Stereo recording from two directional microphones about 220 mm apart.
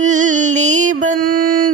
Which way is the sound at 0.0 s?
35° right (ahead or behind).